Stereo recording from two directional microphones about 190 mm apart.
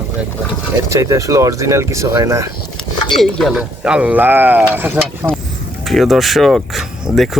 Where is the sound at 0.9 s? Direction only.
15° right (ahead or behind).